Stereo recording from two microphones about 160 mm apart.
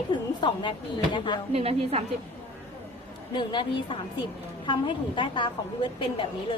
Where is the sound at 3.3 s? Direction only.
30° left (ahead or behind).